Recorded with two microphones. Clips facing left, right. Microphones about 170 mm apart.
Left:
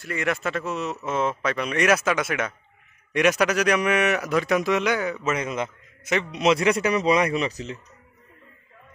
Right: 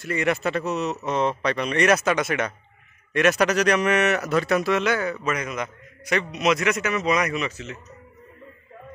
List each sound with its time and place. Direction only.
0.0 s speech: centre (ahead or behind); by 5.1 s 15° left (ahead or behind)
5.2 s a man's voice: 25° left (ahead or behind)